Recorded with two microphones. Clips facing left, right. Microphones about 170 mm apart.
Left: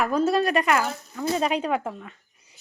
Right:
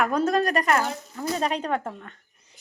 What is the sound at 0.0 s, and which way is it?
Speech, 5° left (ahead or behind).